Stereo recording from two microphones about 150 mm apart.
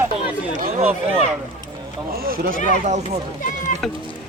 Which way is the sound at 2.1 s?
80° right.